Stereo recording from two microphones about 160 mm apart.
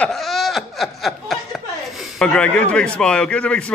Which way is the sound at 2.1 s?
5° left (ahead or behind).